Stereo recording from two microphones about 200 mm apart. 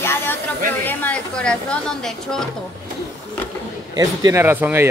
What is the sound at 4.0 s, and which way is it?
Speech, 15° right (ahead or behind).